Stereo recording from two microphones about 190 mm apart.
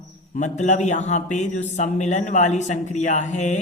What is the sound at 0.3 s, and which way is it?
Speech, 40° left (ahead or behind).